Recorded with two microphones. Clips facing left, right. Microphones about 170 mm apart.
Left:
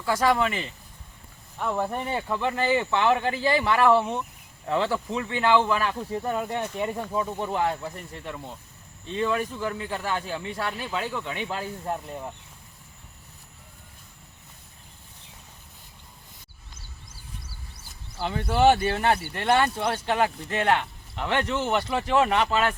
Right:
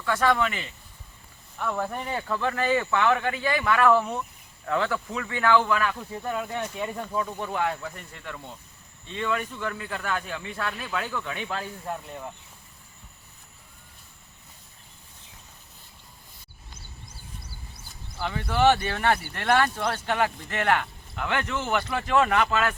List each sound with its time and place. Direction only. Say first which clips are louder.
0.3 s a man's voice: left 2 dB; 30° left (ahead or behind)
1.5 s a man's voice: left 2 dB; 15° left (ahead or behind)
6.7 s a man's voice: left 2 dB; 15° left (ahead or behind)
18.2 s a man's voice: left 2 dB; 30° left (ahead or behind)